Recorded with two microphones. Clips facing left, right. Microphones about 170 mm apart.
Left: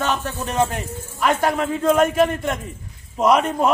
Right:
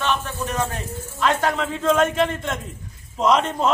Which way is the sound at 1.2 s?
10° left (ahead or behind).